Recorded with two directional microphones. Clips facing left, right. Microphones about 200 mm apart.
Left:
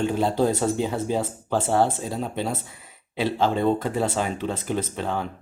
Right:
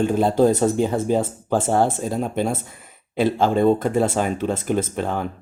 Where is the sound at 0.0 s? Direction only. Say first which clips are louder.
Right 5 dB; 50° right (ahead or behind).